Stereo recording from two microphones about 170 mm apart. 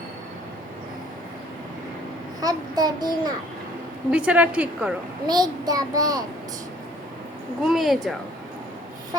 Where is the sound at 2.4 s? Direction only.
20° right (ahead or behind).